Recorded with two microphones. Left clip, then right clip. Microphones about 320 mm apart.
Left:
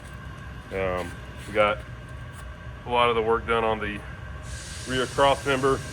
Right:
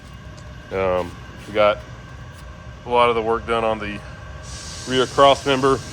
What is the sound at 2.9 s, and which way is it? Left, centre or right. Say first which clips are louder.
Speech: right 5 dB; centre.